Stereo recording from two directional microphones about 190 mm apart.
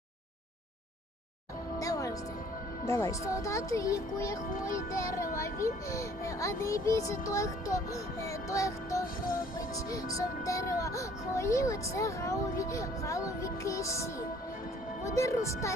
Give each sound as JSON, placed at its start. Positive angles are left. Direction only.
{"t": 1.8, "sound": "music", "side_deg": 20}
{"t": 2.8, "sound": "speech", "side_deg": 15}
{"t": 9.2, "sound": "music", "side_deg": 50}
{"t": 9.6, "sound": "speech", "side_deg": 15}